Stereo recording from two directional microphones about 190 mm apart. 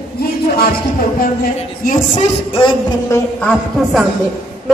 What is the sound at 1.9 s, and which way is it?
Speech, 35° left (ahead or behind).